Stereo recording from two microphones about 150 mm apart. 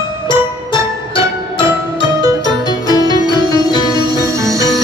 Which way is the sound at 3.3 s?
30° right (ahead or behind).